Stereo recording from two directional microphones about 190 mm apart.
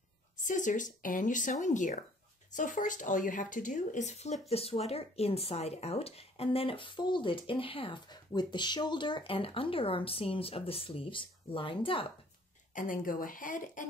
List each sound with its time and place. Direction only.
0.4 s speech: 40° left (ahead or behind)
12.7 s speech: 45° left (ahead or behind)